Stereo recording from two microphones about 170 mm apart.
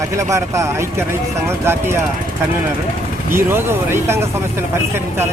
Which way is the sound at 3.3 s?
15° right (ahead or behind).